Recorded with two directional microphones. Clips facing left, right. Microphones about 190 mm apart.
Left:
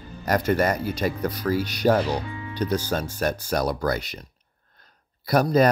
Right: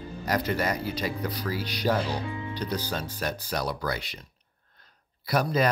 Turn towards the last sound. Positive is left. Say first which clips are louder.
# left 6 dB
turn(degrees=45)  # may be behind; listen again after turning